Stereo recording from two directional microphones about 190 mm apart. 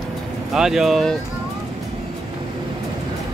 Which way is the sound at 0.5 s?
5° right (ahead or behind).